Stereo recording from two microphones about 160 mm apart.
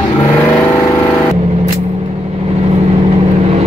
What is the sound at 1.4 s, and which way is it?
Vehicle, 40° right (ahead or behind).